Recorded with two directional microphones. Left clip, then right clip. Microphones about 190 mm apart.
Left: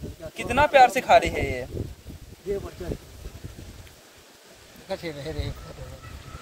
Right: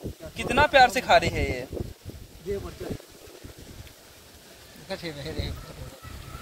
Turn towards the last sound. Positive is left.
turn(degrees=20)  # may be behind; listen again after turning